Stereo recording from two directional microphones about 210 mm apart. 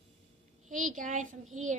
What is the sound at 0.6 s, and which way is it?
Speech, 40° right (ahead or behind).